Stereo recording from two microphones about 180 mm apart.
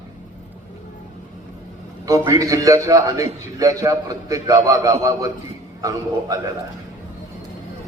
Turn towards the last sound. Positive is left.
turn(degrees=-20)  # may be behind; listen again after turning